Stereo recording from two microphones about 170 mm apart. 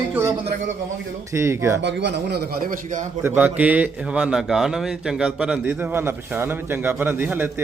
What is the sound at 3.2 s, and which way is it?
A man's voice, 10° right (ahead or behind).